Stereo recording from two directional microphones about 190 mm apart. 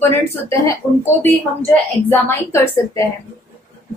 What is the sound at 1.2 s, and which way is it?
A woman's voice, 10° left (ahead or behind).